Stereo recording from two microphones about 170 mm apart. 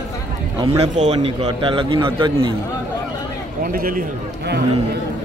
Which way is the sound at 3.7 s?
55° right (ahead or behind).